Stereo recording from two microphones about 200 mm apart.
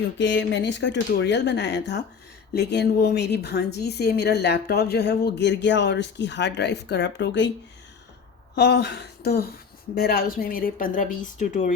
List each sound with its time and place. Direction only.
0.2 s a woman's voice: 65° left (ahead or behind)
8.5 s a woman's voice: 55° left (ahead or behind); by 11.7 s 40° left (ahead or behind)